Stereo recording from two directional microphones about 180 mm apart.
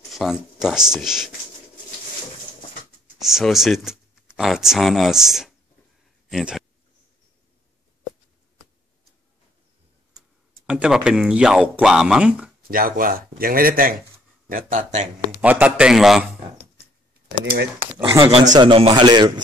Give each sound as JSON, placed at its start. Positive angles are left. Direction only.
{"t": 0.1, "sound": "speech", "side_deg": 0}
{"t": 3.2, "sound": "speech", "side_deg": 0}
{"t": 10.7, "sound": "speech", "side_deg": -5}
{"t": 12.7, "sound": "speech", "side_deg": -50}
{"t": 15.4, "sound": "speech", "side_deg": -10}
{"t": 17.3, "sound": "speech", "side_deg": -55}
{"t": 18.2, "sound": "a man's voice", "side_deg": -25}